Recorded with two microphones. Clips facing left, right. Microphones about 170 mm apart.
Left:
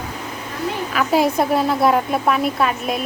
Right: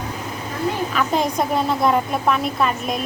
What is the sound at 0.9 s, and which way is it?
A woman's voice, 5° left (ahead or behind).